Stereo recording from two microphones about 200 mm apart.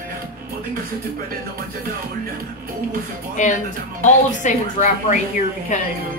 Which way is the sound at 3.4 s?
40° left (ahead or behind).